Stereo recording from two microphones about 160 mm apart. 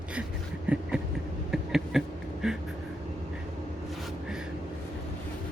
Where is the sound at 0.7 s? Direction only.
5° right (ahead or behind).